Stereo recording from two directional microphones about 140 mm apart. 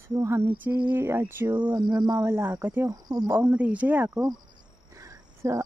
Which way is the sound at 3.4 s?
10° right (ahead or behind).